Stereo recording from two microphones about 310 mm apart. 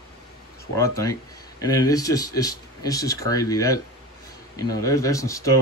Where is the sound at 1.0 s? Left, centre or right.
Centre.